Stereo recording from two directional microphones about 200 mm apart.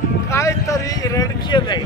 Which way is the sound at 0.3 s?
15° left (ahead or behind).